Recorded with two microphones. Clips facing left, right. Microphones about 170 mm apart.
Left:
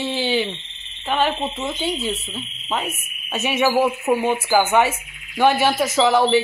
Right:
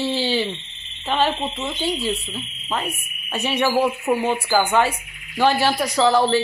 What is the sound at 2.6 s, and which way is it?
Speech, 10° left (ahead or behind).